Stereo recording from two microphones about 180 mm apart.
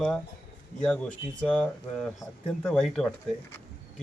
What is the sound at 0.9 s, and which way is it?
Speech, 5° left (ahead or behind).